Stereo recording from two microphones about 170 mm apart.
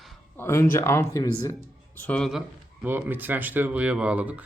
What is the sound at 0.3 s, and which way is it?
Speech, 15° left (ahead or behind).